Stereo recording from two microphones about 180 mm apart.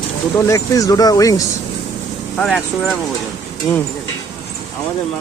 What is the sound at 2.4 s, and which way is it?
Speech, centre (ahead or behind).